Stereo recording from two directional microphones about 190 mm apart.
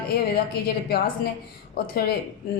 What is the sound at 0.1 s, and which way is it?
A woman's voice, 55° left (ahead or behind).